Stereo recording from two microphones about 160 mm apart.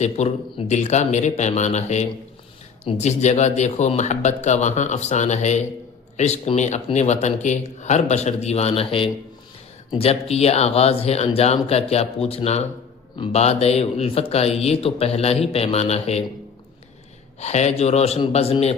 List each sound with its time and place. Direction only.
0.0 s a man's voice: 45° left (ahead or behind)
17.4 s a man's voice: 45° left (ahead or behind)